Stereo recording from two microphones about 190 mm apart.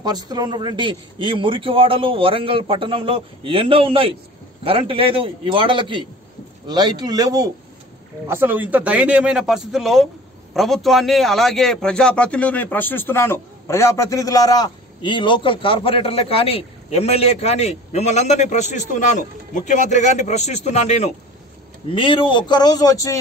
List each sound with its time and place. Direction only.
0.0 s a man's voice: 20° right (ahead or behind); by 23.1 s 20° left (ahead or behind)